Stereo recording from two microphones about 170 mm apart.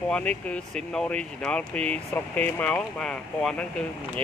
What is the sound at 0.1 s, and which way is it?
Speech, 5° left (ahead or behind).